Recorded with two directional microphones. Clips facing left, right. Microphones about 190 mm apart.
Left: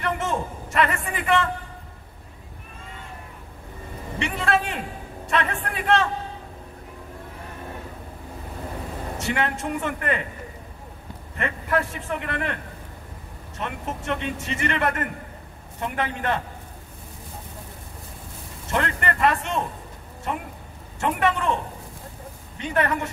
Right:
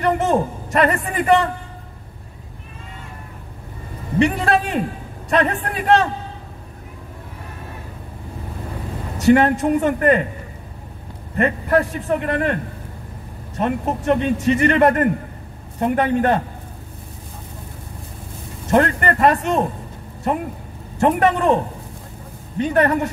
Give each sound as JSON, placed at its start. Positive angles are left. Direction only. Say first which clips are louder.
{"t": 0.0, "sound": "a man's voice", "louder": "right 8 dB", "side_deg": -40}
{"t": 4.2, "sound": "a man's voice", "louder": "right 7 dB", "side_deg": -40}
{"t": 9.2, "sound": "a man's voice", "louder": "right 13 dB", "side_deg": -40}
{"t": 11.3, "sound": "a man's voice", "louder": "right 8 dB", "side_deg": -40}
{"t": 13.6, "sound": "a man's voice", "louder": "right 10 dB", "side_deg": -40}
{"t": 18.7, "sound": "a man's voice", "louder": "right 9 dB", "side_deg": -45}
{"t": 22.6, "sound": "a man's voice", "louder": "right 7 dB", "side_deg": -40}